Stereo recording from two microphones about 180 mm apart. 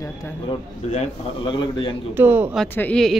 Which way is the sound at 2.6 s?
5° left (ahead or behind).